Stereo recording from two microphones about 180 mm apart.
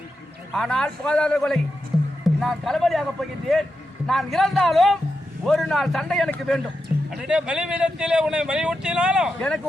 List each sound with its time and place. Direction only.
0.5 s a man's voice: centre (ahead or behind)